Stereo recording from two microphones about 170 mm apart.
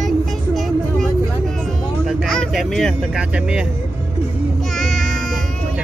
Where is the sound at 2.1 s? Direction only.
Centre (ahead or behind).